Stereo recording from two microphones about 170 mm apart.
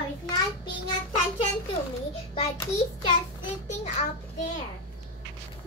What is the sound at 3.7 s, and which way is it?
Speech, 45° left (ahead or behind).